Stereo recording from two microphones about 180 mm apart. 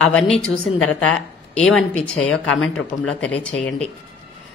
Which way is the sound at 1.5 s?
Centre (ahead or behind).